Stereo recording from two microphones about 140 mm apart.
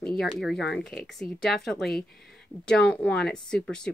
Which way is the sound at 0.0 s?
5° left (ahead or behind).